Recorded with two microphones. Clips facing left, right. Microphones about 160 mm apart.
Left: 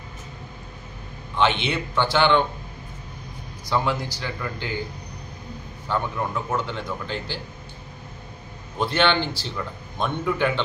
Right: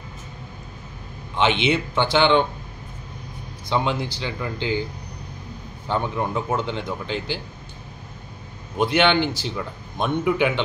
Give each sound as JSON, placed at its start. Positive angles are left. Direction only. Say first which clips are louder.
{"t": 1.4, "sound": "speech", "louder": "right 2 dB", "side_deg": -20}
{"t": 3.6, "sound": "speech", "louder": "right 1 dB", "side_deg": -20}
{"t": 5.9, "sound": "speech", "louder": "right 2 dB", "side_deg": -25}
{"t": 8.7, "sound": "a man's voice", "louder": "right 3 dB", "side_deg": -15}